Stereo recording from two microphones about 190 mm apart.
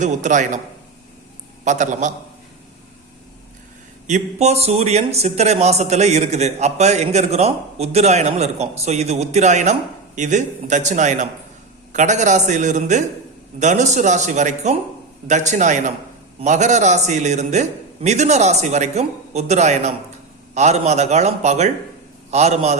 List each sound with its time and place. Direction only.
0.0 s speech: 40° right (ahead or behind)
1.6 s speech: 40° right (ahead or behind)
4.0 s speech: 35° right (ahead or behind)